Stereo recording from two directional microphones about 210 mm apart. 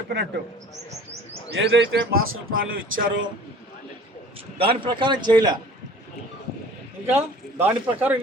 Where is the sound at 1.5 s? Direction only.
55° right (ahead or behind).